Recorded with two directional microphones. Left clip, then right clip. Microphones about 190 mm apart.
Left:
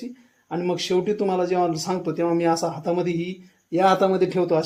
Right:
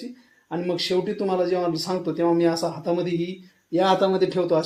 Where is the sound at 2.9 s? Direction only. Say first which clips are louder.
Even; 55° left (ahead or behind).